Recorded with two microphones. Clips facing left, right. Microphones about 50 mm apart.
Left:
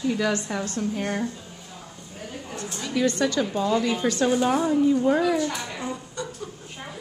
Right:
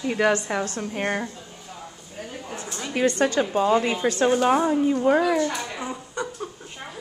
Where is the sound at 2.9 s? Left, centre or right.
Right.